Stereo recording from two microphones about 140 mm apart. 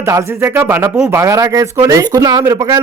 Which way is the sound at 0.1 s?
20° right (ahead or behind).